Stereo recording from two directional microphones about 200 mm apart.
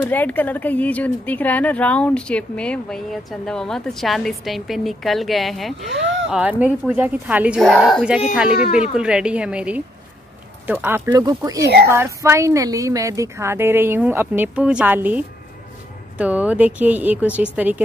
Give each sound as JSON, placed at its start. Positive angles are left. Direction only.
{"t": 0.0, "sound": "speech", "side_deg": 10}
{"t": 5.9, "sound": "speech", "side_deg": -65}
{"t": 6.3, "sound": "a woman's voice", "side_deg": -5}
{"t": 11.6, "sound": "a woman's voice", "side_deg": -55}
{"t": 11.9, "sound": "a woman's voice", "side_deg": -15}